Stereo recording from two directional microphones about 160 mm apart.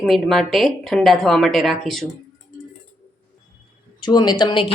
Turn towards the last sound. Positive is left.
turn(degrees=30)  # may be behind; listen again after turning